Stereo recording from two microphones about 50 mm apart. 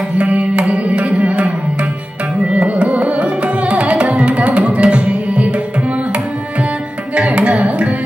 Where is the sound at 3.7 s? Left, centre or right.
Right.